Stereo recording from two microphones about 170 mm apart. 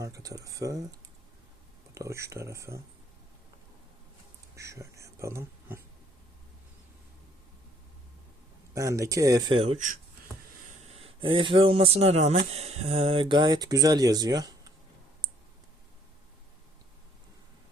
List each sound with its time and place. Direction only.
0.0 s speech: 20° right (ahead or behind)
2.0 s speech: 15° right (ahead or behind)
4.5 s speech: 15° right (ahead or behind)
8.7 s speech: 20° right (ahead or behind)
9.6 s speech: 40° right (ahead or behind)
10.8 s a man's voice: 35° right (ahead or behind)